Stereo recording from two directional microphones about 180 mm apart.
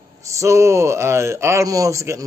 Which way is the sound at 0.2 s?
15° right (ahead or behind).